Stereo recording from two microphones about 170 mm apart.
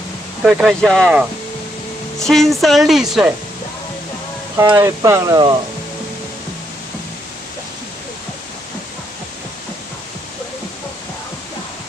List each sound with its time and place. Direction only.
0.4 s speech: 5° right (ahead or behind)
2.1 s speech: centre (ahead or behind)
4.6 s speech: 15° right (ahead or behind)